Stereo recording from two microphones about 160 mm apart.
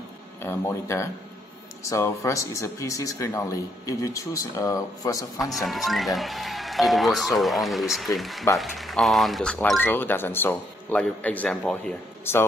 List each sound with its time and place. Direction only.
0.4 s speech: 15° left (ahead or behind)
5.4 s speech: centre (ahead or behind)